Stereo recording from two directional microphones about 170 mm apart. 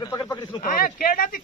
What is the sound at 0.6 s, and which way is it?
Speech, 55° left (ahead or behind).